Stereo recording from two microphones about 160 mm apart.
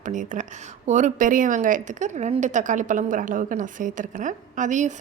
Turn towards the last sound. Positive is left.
turn(degrees=-50)  # may be behind; listen again after turning